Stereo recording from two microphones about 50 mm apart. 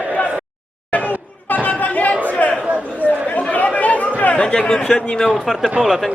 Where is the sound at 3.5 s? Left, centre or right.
Left.